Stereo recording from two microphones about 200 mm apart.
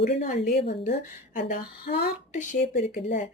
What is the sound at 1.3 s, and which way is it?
Speech, 45° left (ahead or behind).